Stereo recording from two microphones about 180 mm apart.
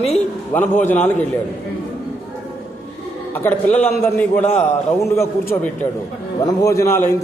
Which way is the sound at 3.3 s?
10° left (ahead or behind).